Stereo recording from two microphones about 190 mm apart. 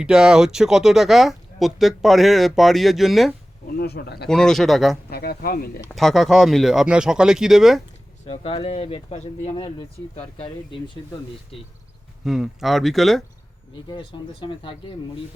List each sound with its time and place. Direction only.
0.0 s speech: 5° right (ahead or behind)
3.7 s speech: 55° left (ahead or behind)
4.3 s speech: 5° left (ahead or behind)
5.0 s speech: 55° left (ahead or behind)
5.9 s speech: centre (ahead or behind)
8.3 s speech: 30° left (ahead or behind)
12.2 s speech: centre (ahead or behind)
13.9 s speech: 25° left (ahead or behind)